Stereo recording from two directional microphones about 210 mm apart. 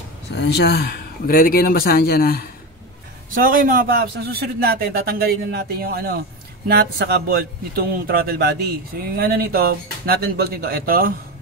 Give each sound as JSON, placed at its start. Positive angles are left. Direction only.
{"t": 0.3, "sound": "speech", "side_deg": 55}
{"t": 3.4, "sound": "speech", "side_deg": -40}